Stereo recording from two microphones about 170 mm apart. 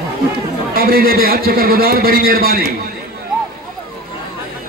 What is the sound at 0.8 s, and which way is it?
A man's voice, 60° right (ahead or behind).